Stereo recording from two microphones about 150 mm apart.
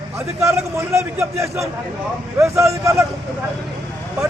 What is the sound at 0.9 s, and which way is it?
Speech, 20° right (ahead or behind).